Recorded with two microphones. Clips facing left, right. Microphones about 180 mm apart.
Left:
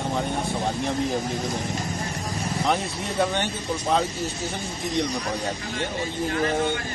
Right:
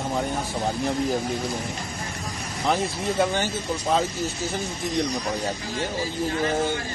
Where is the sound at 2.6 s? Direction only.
Centre (ahead or behind).